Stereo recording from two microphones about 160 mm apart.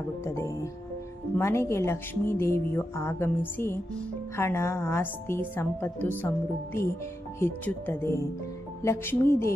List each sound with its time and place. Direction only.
0.2 s speech: 15° left (ahead or behind)